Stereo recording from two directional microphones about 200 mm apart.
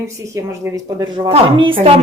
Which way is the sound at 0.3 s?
15° right (ahead or behind).